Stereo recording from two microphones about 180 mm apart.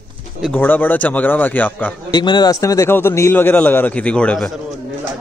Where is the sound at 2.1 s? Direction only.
25° left (ahead or behind); by 4.5 s 5° left (ahead or behind).